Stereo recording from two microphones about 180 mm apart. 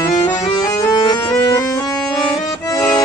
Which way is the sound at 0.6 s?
20° left (ahead or behind).